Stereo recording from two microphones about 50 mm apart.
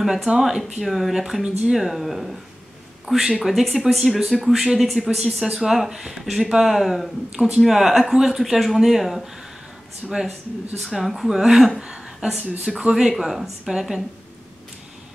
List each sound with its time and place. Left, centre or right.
0.0 s speech: centre
1.4 s speech: centre
1.8 s speech: centre
11.8 s a sound: centre
12.4 s speech: centre
13.1 s speech: centre